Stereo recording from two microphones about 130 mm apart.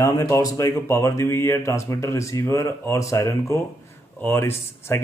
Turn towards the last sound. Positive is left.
turn(degrees=20)  # may be behind; listen again after turning